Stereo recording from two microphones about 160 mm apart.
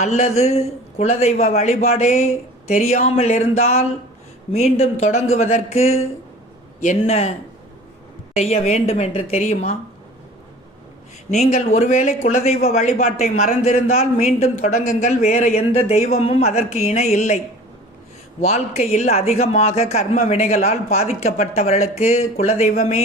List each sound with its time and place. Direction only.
0.0 s a man's voice: 45° left (ahead or behind)
7.0 s speech: 40° left (ahead or behind)
8.4 s a man's voice: 40° left (ahead or behind)
11.3 s a man's voice: 50° left (ahead or behind)
18.4 s a man's voice: 45° left (ahead or behind)